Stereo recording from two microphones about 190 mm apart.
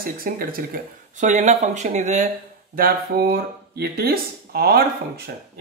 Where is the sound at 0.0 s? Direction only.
50° right (ahead or behind).